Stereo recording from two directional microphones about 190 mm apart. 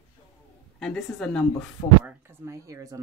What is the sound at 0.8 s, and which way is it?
Speech, centre (ahead or behind).